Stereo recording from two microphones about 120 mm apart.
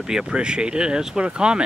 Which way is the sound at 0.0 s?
5° right (ahead or behind).